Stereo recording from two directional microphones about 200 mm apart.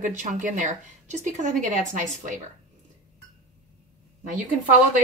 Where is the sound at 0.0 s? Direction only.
40° right (ahead or behind).